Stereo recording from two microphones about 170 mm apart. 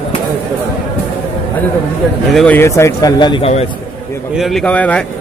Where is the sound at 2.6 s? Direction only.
15° left (ahead or behind).